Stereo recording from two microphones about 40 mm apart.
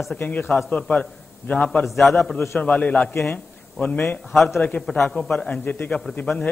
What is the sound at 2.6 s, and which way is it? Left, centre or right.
A man's voice, left.